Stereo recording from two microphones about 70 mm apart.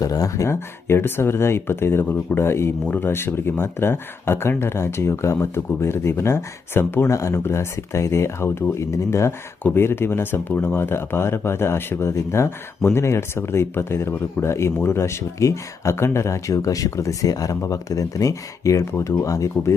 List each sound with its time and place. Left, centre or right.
0.0 s speech: left
0.4 s speech: left